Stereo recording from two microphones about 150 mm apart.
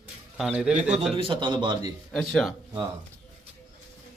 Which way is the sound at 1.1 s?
35° right (ahead or behind).